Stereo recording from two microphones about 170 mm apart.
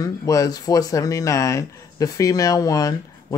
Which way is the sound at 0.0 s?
20° left (ahead or behind).